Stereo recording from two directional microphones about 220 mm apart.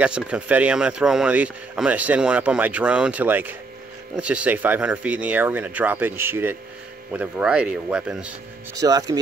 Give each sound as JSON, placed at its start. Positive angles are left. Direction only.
{"t": 0.0, "sound": "speech", "side_deg": -5}
{"t": 8.7, "sound": "speech", "side_deg": -15}